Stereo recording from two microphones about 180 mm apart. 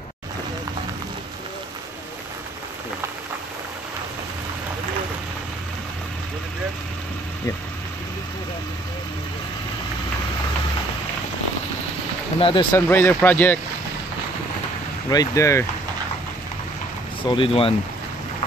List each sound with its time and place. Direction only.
12.4 s speech: 30° left (ahead or behind)
12.7 s speech: 10° left (ahead or behind)
15.0 s speech: 20° left (ahead or behind)
17.3 s speech: 30° left (ahead or behind)